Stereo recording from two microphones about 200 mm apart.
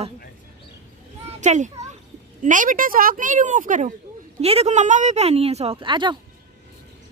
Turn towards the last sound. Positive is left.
turn(degrees=-25)  # may be behind; listen again after turning